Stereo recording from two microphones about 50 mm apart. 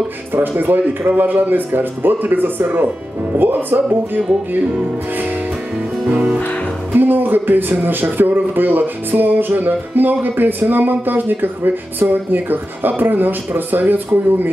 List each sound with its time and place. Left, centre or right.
0.3 s speech: right
6.0 s music: right
6.9 s speech: right